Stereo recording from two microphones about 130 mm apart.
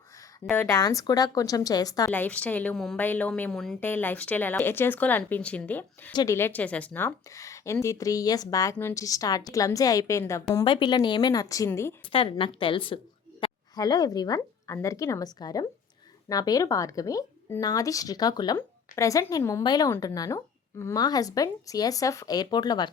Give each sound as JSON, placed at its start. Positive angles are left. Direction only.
{"t": 0.5, "sound": "speech", "side_deg": 15}
{"t": 0.8, "sound": "a woman's voice", "side_deg": 25}
{"t": 2.1, "sound": "speech", "side_deg": 15}
{"t": 3.8, "sound": "a woman's voice", "side_deg": 15}
{"t": 10.6, "sound": "a woman's voice", "side_deg": 40}
{"t": 12.1, "sound": "a woman's voice", "side_deg": 45}
{"t": 13.4, "sound": "a sound", "side_deg": 45}
{"t": 13.7, "sound": "a woman's voice", "side_deg": 30}